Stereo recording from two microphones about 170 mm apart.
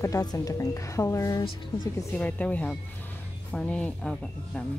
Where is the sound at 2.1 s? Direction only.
10° left (ahead or behind).